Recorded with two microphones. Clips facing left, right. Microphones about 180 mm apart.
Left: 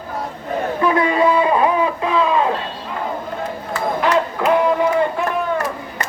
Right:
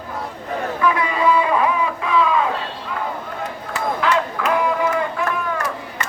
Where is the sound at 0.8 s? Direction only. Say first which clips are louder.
Left 4 dB; 30° left (ahead or behind).